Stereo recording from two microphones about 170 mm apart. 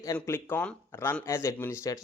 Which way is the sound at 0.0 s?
15° left (ahead or behind).